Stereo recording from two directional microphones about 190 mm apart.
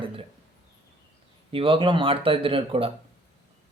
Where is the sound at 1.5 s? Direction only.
30° right (ahead or behind).